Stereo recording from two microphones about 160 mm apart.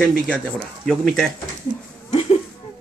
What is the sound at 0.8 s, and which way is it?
Speech, 5° left (ahead or behind).